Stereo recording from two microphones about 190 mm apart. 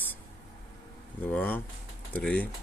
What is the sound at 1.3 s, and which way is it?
Speech, 10° left (ahead or behind).